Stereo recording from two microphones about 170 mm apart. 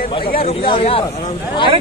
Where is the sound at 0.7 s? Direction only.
35° left (ahead or behind).